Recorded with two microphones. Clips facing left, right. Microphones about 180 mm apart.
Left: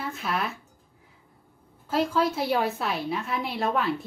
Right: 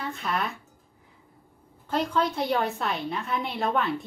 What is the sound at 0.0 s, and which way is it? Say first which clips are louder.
Speech: even; centre (ahead or behind).